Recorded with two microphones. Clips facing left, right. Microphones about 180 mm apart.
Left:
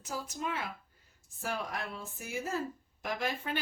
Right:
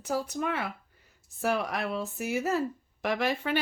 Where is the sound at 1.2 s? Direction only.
75° right (ahead or behind).